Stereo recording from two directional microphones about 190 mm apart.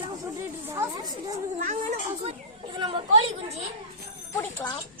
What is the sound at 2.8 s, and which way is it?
Speech, 30° right (ahead or behind).